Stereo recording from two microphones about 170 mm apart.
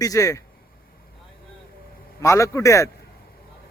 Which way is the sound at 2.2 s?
15° left (ahead or behind).